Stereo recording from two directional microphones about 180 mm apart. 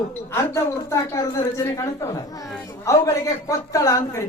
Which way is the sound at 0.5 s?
15° left (ahead or behind).